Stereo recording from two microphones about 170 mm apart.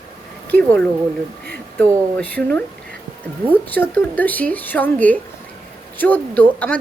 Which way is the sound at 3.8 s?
10° left (ahead or behind).